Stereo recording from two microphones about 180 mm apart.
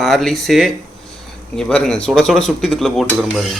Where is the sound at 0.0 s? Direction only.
Centre (ahead or behind).